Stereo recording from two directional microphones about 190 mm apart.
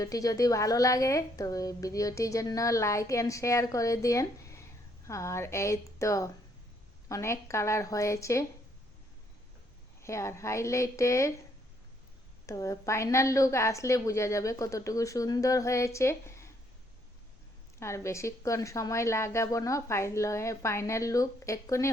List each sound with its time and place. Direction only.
0.0 s speech: 20° left (ahead or behind)
10.0 s speech: 15° left (ahead or behind)
12.5 s speech: 15° left (ahead or behind)
17.7 s speech: 15° left (ahead or behind)